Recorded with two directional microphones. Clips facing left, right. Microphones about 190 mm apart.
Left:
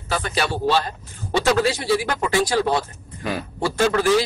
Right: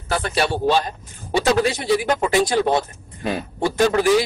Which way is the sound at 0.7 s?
15° right (ahead or behind).